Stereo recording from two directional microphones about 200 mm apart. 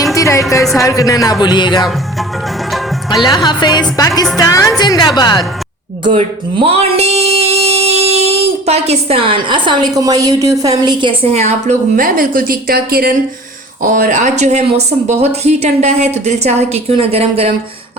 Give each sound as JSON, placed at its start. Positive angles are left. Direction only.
{"t": 0.0, "sound": "music", "side_deg": 15}
{"t": 0.6, "sound": "speech", "side_deg": 0}
{"t": 0.9, "sound": "speech", "side_deg": 15}
{"t": 3.2, "sound": "a woman's voice", "side_deg": 20}
{"t": 6.1, "sound": "speech", "side_deg": -30}
{"t": 11.9, "sound": "a woman's voice", "side_deg": -45}